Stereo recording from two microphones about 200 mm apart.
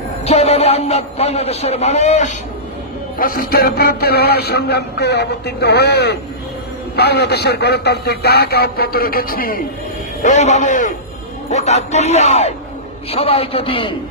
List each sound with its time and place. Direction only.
0.2 s a man's voice: 30° left (ahead or behind)
3.2 s music: 45° left (ahead or behind)
10.2 s a man's voice: 35° left (ahead or behind)